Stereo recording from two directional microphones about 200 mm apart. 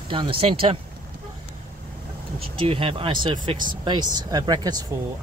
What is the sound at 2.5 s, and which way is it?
Speech, 25° right (ahead or behind).